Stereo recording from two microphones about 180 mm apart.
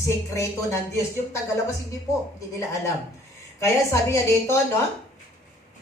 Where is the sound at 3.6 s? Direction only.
15° left (ahead or behind).